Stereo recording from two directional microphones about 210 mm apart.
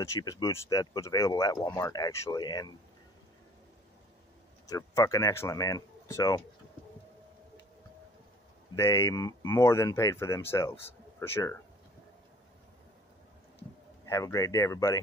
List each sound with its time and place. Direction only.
0.0 s speech: 15° left (ahead or behind)
4.6 s speech: 15° left (ahead or behind)
8.7 s speech: 15° left (ahead or behind)
14.0 s speech: 15° left (ahead or behind)